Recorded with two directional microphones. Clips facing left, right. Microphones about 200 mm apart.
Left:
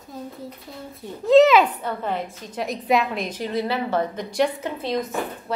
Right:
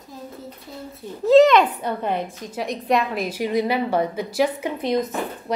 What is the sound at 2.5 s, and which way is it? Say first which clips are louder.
A woman's voice: even; centre (ahead or behind).